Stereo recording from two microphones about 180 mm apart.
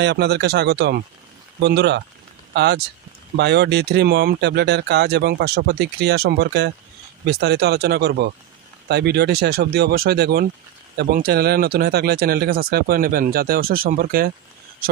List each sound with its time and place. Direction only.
0.0 s speech: 65° right (ahead or behind)